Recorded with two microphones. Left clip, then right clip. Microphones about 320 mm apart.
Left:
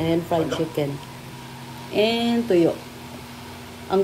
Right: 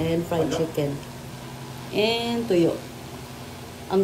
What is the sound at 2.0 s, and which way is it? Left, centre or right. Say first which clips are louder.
Speech: left 2 dB; centre.